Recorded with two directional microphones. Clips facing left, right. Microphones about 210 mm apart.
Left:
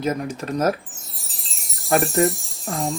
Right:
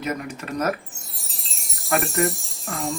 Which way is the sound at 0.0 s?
30° left (ahead or behind).